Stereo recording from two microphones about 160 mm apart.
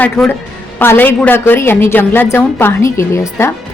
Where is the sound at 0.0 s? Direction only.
10° left (ahead or behind).